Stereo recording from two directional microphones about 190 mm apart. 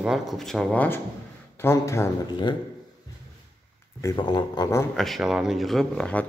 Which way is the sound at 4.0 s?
20° left (ahead or behind).